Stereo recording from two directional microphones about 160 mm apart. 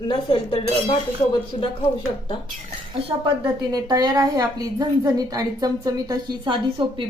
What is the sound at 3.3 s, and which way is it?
A woman's voice, 25° right (ahead or behind).